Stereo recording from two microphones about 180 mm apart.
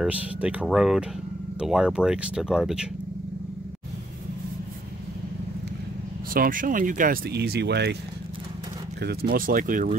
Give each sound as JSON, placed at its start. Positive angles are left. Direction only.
{"t": 0.0, "sound": "speech", "side_deg": -5}
{"t": 6.3, "sound": "speech", "side_deg": -50}
{"t": 9.3, "sound": "speech", "side_deg": -50}